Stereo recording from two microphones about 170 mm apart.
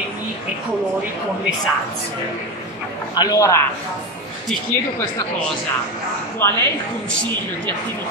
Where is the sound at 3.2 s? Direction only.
20° left (ahead or behind).